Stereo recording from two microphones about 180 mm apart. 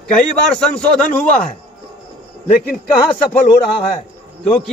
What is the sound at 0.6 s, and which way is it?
Speech, 5° left (ahead or behind).